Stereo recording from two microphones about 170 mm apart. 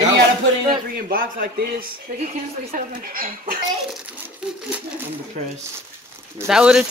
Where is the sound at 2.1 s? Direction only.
50° right (ahead or behind).